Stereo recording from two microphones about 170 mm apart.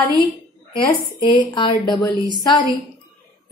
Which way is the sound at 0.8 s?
25° left (ahead or behind).